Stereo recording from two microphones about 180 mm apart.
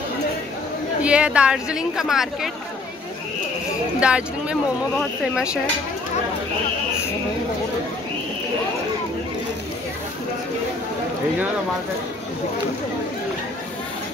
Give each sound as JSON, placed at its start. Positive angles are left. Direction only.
{"t": 1.0, "sound": "speech", "side_deg": -5}
{"t": 4.0, "sound": "speech", "side_deg": -5}